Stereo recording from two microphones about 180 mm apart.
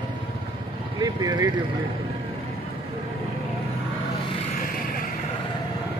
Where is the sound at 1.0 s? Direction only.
20° right (ahead or behind).